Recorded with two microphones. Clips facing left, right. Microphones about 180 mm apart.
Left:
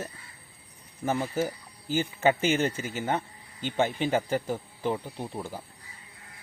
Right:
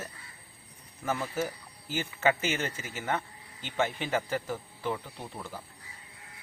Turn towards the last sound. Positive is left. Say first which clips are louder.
# left 5 dB
turn(degrees=30)  # may be behind; listen again after turning